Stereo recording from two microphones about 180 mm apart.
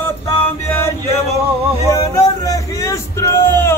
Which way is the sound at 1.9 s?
20° left (ahead or behind).